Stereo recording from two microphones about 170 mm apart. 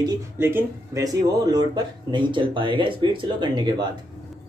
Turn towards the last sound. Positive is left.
turn(degrees=-25)  # may be behind; listen again after turning